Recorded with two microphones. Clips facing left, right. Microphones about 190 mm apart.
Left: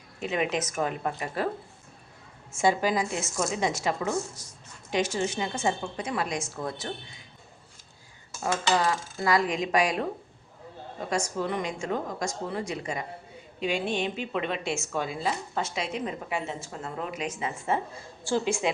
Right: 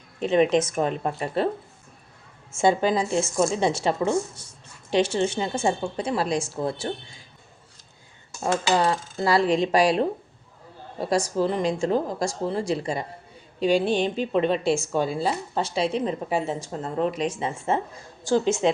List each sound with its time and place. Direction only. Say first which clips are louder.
0.2 s speech: right 9 dB; 30° right (ahead or behind)
2.5 s a woman's voice: right 4 dB; 25° right (ahead or behind)
8.7 s a woman's voice: right 3 dB; 25° right (ahead or behind)
18.2 s speech: right 6 dB; 15° right (ahead or behind)